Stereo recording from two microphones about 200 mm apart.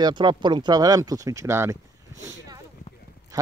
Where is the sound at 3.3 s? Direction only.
15° right (ahead or behind).